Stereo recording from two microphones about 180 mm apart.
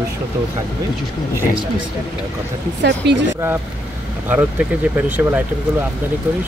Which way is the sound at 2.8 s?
70° right (ahead or behind).